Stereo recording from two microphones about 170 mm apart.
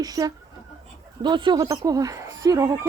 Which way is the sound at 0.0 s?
20° right (ahead or behind).